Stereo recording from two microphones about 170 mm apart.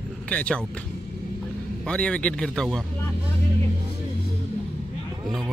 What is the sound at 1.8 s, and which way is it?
Speech, 5° left (ahead or behind).